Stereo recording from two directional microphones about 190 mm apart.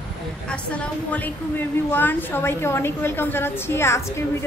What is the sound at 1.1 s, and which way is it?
A woman's voice, 10° left (ahead or behind).